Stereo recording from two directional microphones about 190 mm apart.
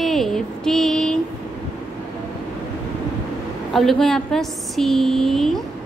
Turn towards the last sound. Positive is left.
turn(degrees=0)  # may be behind; listen again after turning